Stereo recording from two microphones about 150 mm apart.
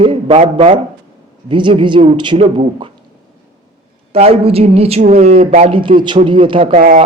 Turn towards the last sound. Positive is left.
turn(degrees=-55)  # may be behind; listen again after turning